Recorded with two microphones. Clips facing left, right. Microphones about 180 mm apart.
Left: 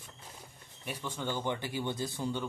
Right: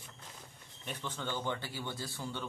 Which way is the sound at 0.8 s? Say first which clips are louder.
Left 3 dB; 10° left (ahead or behind).